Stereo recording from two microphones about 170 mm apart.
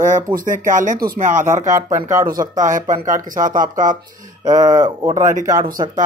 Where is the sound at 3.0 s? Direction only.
50° right (ahead or behind).